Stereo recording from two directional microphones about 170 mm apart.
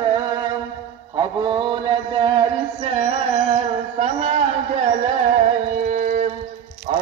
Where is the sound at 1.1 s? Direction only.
30° right (ahead or behind); by 6.3 s 45° right (ahead or behind).